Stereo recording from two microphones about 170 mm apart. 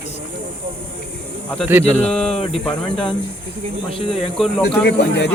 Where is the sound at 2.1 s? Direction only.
5° left (ahead or behind).